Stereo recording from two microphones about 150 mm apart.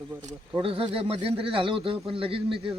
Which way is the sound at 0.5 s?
40° right (ahead or behind).